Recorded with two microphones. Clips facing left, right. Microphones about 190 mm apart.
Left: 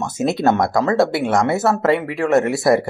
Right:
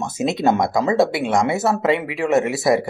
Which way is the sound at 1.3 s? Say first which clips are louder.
Left 1 dB; centre (ahead or behind).